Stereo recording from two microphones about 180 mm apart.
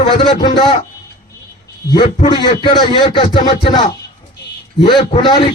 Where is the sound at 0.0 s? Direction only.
35° left (ahead or behind).